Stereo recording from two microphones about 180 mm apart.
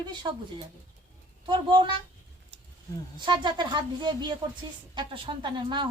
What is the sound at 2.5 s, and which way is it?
Wild animals, 35° right (ahead or behind).